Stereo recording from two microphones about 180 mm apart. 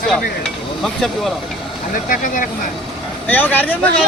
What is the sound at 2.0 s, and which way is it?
Speech, 50° left (ahead or behind).